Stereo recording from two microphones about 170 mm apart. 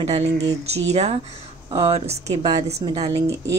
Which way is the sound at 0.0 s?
35° right (ahead or behind).